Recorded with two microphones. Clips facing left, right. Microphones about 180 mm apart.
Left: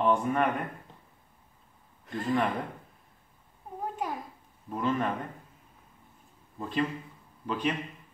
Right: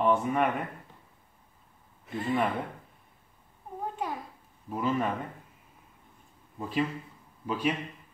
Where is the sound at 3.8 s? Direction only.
Centre (ahead or behind).